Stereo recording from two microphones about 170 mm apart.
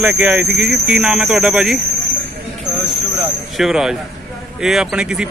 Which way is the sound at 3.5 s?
Centre (ahead or behind).